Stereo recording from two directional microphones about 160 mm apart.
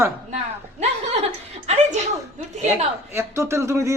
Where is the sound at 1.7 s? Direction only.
45° right (ahead or behind).